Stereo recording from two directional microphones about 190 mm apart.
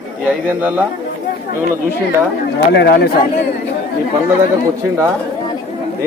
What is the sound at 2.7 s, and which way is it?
Speech, 60° left (ahead or behind).